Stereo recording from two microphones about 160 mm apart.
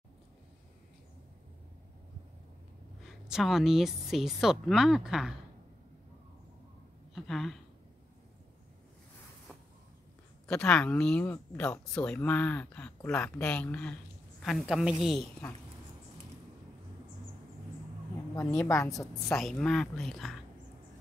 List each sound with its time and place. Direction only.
3.1 s a woman's voice: centre (ahead or behind)
7.2 s speech: centre (ahead or behind)
10.5 s a woman's voice: 5° left (ahead or behind)
18.6 s speech: 20° left (ahead or behind)
19.3 s a woman's voice: centre (ahead or behind)